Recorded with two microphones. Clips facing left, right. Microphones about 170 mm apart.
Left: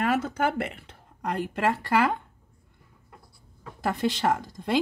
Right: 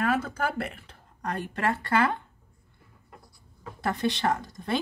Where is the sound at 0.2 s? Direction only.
20° left (ahead or behind).